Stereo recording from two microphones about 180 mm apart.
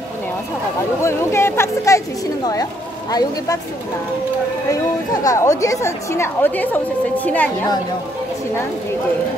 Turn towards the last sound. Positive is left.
turn(degrees=10)  # may be behind; listen again after turning